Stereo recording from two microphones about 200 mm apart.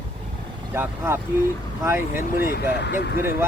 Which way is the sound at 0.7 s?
10° right (ahead or behind).